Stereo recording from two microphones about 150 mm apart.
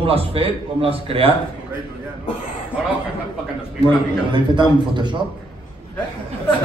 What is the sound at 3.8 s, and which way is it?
A man's voice, 30° right (ahead or behind).